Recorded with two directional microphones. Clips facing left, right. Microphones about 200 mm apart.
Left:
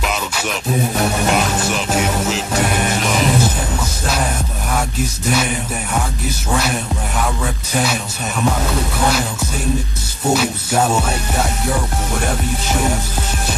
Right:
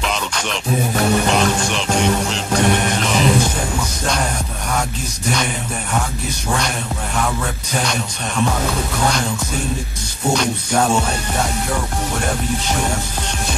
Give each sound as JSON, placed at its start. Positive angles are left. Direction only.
{"t": 0.0, "sound": "music", "side_deg": 5}
{"t": 1.6, "sound": "music", "side_deg": 5}
{"t": 10.3, "sound": "music", "side_deg": 5}